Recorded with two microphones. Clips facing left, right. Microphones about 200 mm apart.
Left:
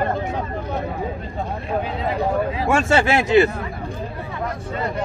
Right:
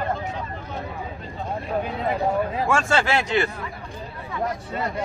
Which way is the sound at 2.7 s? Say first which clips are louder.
Left 5 dB; 20° left (ahead or behind).